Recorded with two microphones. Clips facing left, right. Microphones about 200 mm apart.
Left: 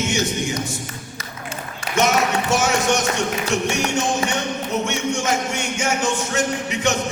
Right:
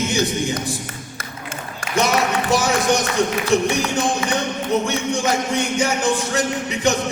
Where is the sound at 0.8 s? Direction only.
55° right (ahead or behind).